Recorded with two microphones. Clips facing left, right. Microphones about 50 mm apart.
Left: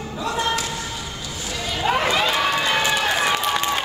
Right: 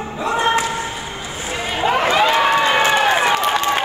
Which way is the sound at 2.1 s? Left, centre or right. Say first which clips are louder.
Right 6 dB; right.